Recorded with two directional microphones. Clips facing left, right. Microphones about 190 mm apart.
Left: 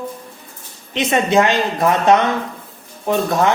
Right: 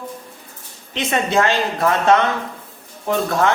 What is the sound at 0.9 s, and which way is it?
A man's voice, 20° left (ahead or behind).